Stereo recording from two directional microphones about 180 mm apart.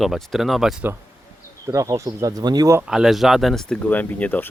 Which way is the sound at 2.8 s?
5° right (ahead or behind).